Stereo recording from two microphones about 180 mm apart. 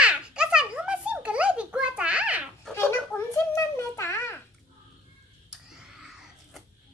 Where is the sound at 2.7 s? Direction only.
15° left (ahead or behind).